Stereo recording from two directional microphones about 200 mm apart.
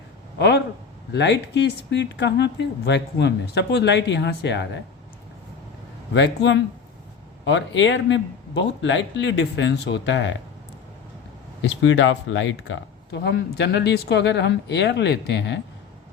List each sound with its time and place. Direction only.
0.3 s speech: 60° left (ahead or behind)
6.1 s speech: 60° left (ahead or behind)
11.6 s speech: 65° left (ahead or behind)